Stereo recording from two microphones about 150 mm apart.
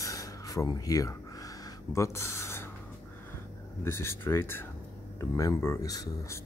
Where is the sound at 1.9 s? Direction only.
20° left (ahead or behind).